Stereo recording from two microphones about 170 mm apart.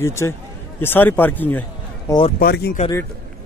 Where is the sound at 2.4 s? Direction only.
65° left (ahead or behind).